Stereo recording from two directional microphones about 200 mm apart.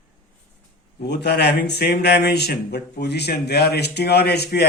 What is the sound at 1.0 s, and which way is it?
Speech, 55° left (ahead or behind).